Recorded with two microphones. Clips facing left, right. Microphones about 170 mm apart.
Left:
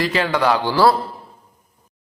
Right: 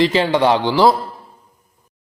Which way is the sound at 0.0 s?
25° right (ahead or behind).